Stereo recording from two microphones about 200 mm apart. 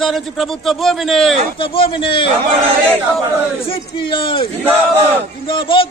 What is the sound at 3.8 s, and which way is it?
Speech, 20° left (ahead or behind).